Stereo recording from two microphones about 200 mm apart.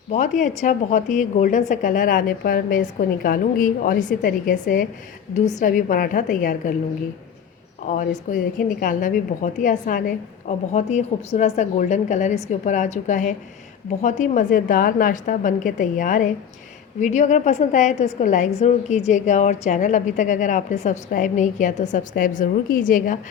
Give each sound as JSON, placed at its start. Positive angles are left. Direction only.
{"t": 0.1, "sound": "a woman's voice", "side_deg": 35}
{"t": 7.9, "sound": "a woman's voice", "side_deg": 40}